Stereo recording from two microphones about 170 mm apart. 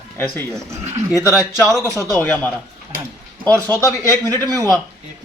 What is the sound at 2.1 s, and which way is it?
Speech, 10° left (ahead or behind).